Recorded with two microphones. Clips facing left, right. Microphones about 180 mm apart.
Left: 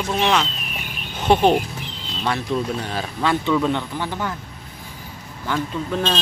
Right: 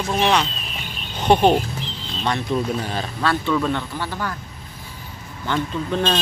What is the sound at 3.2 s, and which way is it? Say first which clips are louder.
Speech: left 2 dB; 15° left (ahead or behind).